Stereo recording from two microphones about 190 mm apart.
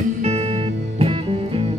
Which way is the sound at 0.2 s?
35° right (ahead or behind).